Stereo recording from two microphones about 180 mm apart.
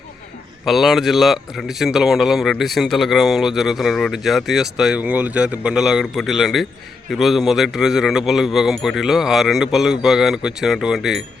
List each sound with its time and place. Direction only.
0.6 s a man's voice: centre (ahead or behind)